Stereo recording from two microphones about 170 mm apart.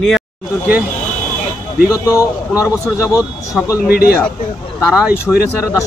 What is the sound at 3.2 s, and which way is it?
Speech, 5° right (ahead or behind).